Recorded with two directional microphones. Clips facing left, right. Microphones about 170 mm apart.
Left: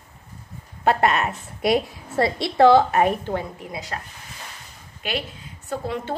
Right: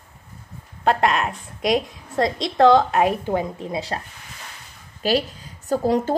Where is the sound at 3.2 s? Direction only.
15° right (ahead or behind).